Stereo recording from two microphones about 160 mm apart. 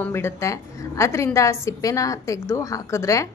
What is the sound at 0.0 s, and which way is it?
A woman's voice, 15° left (ahead or behind).